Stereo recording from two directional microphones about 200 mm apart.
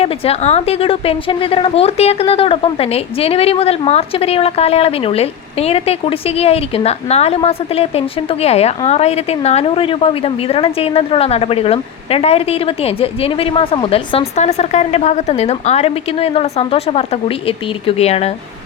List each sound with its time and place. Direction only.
0.0 s a woman's voice: 30° left (ahead or behind)